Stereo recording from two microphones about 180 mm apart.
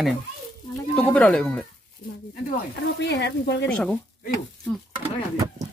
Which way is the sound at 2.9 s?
70° left (ahead or behind).